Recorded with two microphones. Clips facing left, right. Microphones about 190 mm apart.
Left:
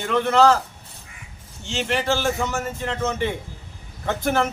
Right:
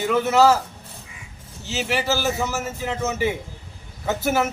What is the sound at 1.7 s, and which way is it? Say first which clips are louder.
A man's voice: left 1 dB; 5° right (ahead or behind).